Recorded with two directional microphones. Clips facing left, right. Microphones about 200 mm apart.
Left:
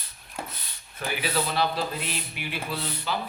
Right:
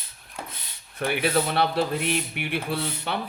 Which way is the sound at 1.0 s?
60° right (ahead or behind).